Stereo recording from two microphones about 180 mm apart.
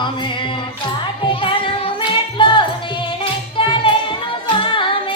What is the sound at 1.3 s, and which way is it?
Music, 30° left (ahead or behind).